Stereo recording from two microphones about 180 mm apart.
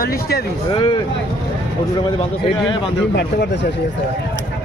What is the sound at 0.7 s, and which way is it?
Speech, 30° left (ahead or behind).